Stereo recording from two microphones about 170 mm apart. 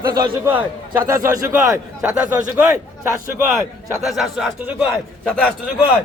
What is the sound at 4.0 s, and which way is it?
A man's voice, centre (ahead or behind).